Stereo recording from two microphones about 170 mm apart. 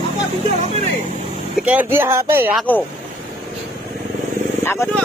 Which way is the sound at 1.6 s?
10° right (ahead or behind).